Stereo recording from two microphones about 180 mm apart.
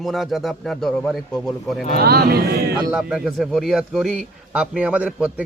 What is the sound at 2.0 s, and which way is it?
Speech, 60° right (ahead or behind).